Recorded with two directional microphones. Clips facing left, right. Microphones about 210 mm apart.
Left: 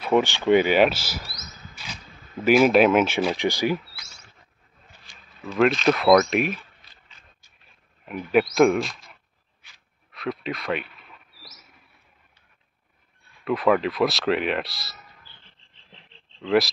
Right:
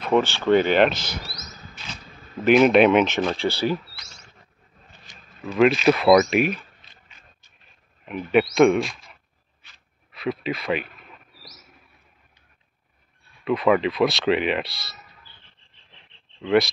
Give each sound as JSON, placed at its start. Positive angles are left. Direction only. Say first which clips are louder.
{"t": 0.0, "sound": "speech", "louder": "even", "side_deg": 15}
{"t": 2.4, "sound": "speech", "louder": "right 1 dB", "side_deg": 5}
{"t": 5.1, "sound": "a sound", "louder": "right 4 dB", "side_deg": -20}
{"t": 5.5, "sound": "speech", "louder": "right 2 dB", "side_deg": -5}
{"t": 6.8, "sound": "a sound", "louder": "right 2 dB", "side_deg": -25}
{"t": 8.0, "sound": "speech", "louder": "right 1 dB", "side_deg": 0}
{"t": 10.1, "sound": "speech", "louder": "right 3 dB", "side_deg": 0}
{"t": 13.4, "sound": "speech", "louder": "right 1 dB", "side_deg": 0}
{"t": 16.3, "sound": "speech", "louder": "right 1 dB", "side_deg": 0}